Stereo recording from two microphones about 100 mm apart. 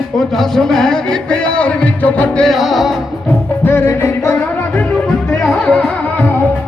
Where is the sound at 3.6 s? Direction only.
25° left (ahead or behind).